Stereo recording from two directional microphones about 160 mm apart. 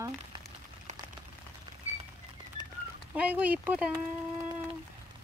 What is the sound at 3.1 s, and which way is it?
Speech, 10° right (ahead or behind).